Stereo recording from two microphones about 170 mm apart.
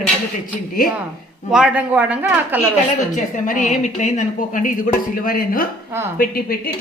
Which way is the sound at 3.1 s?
50° left (ahead or behind).